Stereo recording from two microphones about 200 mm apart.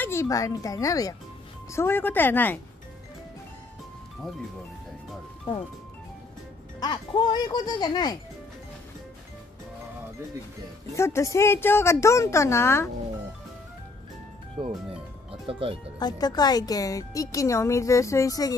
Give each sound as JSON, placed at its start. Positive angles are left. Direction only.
{"t": 0.0, "sound": "speech", "side_deg": 15}
{"t": 6.8, "sound": "speech", "side_deg": 20}
{"t": 10.9, "sound": "speech", "side_deg": 15}
{"t": 14.6, "sound": "speech", "side_deg": -25}
{"t": 16.0, "sound": "speech", "side_deg": 20}